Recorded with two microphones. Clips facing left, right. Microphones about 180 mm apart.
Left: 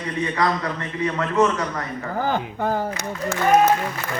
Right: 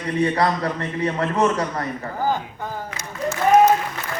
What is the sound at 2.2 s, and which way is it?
Speech, 65° left (ahead or behind).